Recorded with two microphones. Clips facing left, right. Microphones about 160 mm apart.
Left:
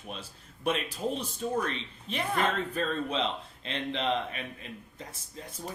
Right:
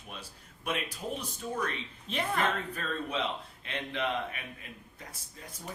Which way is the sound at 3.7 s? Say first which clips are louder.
Left 2 dB; 30° left (ahead or behind).